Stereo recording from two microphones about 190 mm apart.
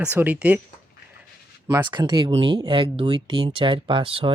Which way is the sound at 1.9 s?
25° right (ahead or behind).